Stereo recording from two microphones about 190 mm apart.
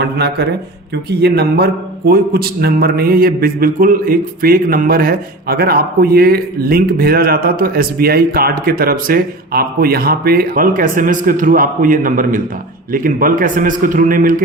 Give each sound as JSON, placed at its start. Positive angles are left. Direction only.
{"t": 0.0, "sound": "a man's voice", "side_deg": -60}